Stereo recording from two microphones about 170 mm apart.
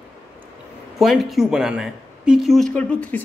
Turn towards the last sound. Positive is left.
turn(degrees=10)  # may be behind; listen again after turning